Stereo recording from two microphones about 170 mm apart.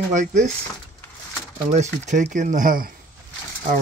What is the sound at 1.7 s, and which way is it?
Speech, 45° right (ahead or behind).